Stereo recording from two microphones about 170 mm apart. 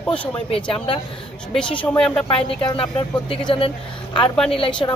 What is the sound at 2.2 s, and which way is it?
Speech, 30° left (ahead or behind).